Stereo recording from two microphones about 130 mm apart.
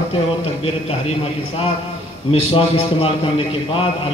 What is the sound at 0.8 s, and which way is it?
A man's voice, 50° left (ahead or behind).